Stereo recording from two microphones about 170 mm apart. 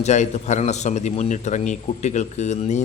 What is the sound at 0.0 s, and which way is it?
A man's voice, 45° left (ahead or behind).